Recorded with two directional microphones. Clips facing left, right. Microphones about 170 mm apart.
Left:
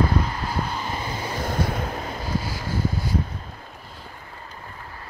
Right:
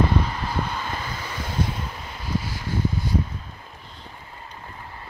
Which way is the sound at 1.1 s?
35° left (ahead or behind).